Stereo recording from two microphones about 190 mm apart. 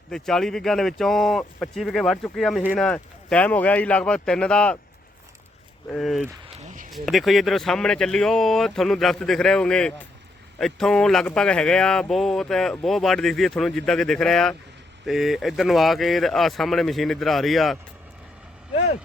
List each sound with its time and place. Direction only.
0.1 s speech: centre (ahead or behind)
5.9 s speech: centre (ahead or behind)
6.4 s a sound: 40° right (ahead or behind)
6.9 s speech: centre (ahead or behind)